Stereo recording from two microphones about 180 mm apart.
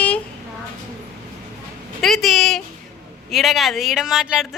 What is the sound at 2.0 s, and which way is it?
A woman's voice, centre (ahead or behind).